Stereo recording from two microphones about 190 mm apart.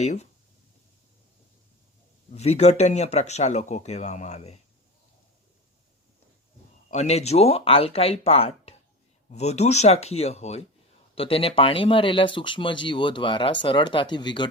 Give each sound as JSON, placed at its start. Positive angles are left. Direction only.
{"t": 0.0, "sound": "speech", "side_deg": 35}
{"t": 2.3, "sound": "speech", "side_deg": 35}
{"t": 6.9, "sound": "speech", "side_deg": 35}